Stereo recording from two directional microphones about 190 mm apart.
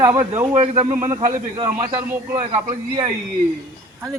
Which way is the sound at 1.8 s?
15° right (ahead or behind).